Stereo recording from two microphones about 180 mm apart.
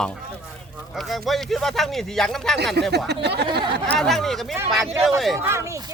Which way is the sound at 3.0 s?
65° right (ahead or behind).